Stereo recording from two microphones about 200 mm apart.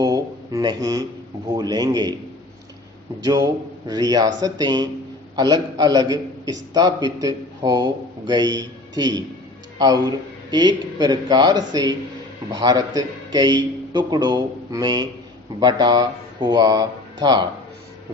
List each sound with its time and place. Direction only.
0.0 s a sound: 20° right (ahead or behind)
1.5 s a man's voice: 20° right (ahead or behind)
3.2 s a man's voice: 20° right (ahead or behind)